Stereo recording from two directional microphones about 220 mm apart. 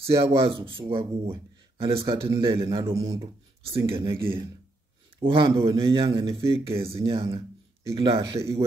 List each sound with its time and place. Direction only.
0.0 s speech: 25° right (ahead or behind)
5.2 s speech: 20° right (ahead or behind)